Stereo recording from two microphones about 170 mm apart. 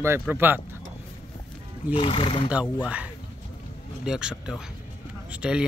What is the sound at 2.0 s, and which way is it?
Speech, 35° left (ahead or behind).